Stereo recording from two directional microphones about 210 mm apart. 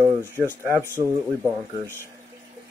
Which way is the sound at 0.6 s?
10° right (ahead or behind).